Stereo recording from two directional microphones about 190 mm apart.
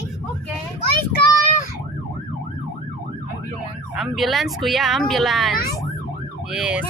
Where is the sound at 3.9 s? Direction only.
Centre (ahead or behind).